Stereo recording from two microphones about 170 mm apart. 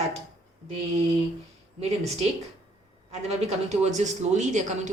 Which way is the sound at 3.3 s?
40° right (ahead or behind).